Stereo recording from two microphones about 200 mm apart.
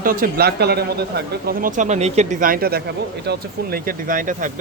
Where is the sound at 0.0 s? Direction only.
45° right (ahead or behind).